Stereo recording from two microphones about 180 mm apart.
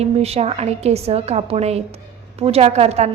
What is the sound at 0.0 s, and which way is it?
A woman's voice, 35° right (ahead or behind).